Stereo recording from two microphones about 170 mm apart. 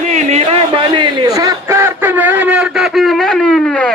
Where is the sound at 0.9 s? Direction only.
25° right (ahead or behind); by 3.9 s 5° left (ahead or behind).